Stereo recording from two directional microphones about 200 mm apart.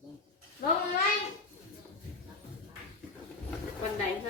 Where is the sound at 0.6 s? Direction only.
50° left (ahead or behind).